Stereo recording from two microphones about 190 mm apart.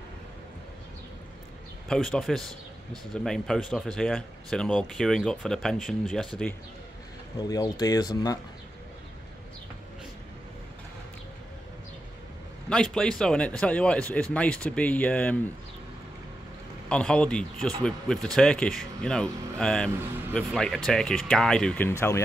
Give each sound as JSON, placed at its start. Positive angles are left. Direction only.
{"t": 1.9, "sound": "speech", "side_deg": 0}
{"t": 7.3, "sound": "speech", "side_deg": 20}
{"t": 12.6, "sound": "speech", "side_deg": 5}
{"t": 16.9, "sound": "speech", "side_deg": 5}